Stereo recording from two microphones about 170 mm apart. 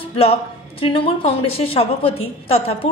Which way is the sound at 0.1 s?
35° left (ahead or behind).